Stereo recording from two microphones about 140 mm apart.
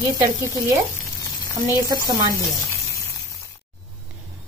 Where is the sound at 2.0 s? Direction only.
25° right (ahead or behind).